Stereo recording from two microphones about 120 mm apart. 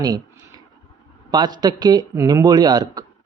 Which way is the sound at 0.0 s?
35° right (ahead or behind).